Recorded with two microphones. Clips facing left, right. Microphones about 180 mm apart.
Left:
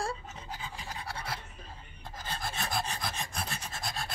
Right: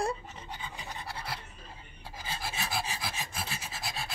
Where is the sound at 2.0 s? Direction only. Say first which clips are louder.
Left 1 dB; 10° right (ahead or behind).